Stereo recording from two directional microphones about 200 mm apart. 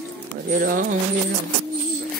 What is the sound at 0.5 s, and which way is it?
Speech, 40° right (ahead or behind).